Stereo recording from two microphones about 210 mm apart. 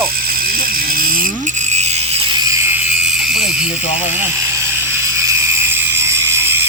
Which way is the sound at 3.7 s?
30° left (ahead or behind).